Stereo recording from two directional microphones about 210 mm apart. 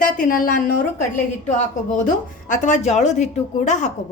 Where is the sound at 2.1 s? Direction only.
35° left (ahead or behind).